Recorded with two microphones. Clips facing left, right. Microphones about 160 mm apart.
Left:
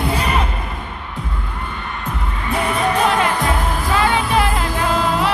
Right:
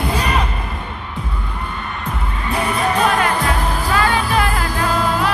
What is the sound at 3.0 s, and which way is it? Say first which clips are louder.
Music: even; 20° left (ahead or behind).